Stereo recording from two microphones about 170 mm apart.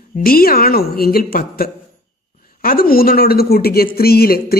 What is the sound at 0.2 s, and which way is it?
Speech, 60° left (ahead or behind).